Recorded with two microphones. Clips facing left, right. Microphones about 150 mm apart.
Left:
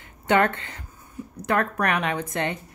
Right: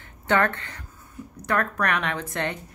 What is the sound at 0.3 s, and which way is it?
A woman's voice, 20° left (ahead or behind).